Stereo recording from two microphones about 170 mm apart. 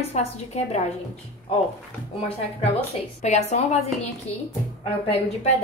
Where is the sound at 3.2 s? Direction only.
40° left (ahead or behind).